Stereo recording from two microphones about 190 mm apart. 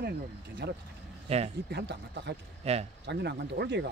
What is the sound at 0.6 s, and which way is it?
Speech, 60° right (ahead or behind).